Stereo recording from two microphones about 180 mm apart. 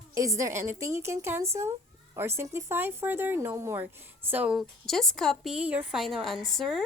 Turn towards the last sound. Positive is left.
turn(degrees=0)  # may be behind; listen again after turning